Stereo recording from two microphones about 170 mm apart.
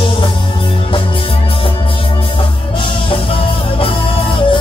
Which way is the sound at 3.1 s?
30° left (ahead or behind).